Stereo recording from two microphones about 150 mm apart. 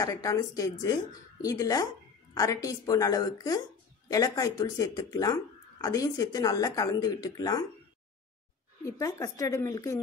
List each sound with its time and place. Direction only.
0.0 s speech: 25° left (ahead or behind)
8.8 s speech: 20° left (ahead or behind)